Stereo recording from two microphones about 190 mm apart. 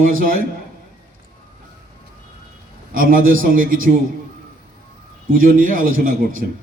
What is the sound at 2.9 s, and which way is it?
Speech, 45° right (ahead or behind).